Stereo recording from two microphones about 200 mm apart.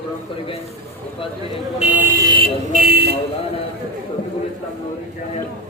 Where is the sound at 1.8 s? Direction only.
10° right (ahead or behind).